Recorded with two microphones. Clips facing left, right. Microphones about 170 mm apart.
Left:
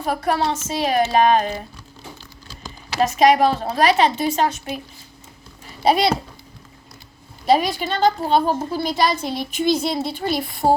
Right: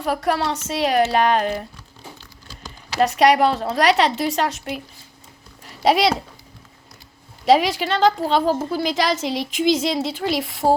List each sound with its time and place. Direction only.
0.0 s a woman's voice: 75° right (ahead or behind)
3.1 s a woman's voice: 70° right (ahead or behind)
5.6 s speech: 90° right
7.4 s a woman's voice: 90° right